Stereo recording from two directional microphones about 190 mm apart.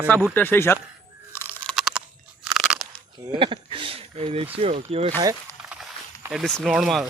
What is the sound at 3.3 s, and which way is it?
Speech, 25° right (ahead or behind).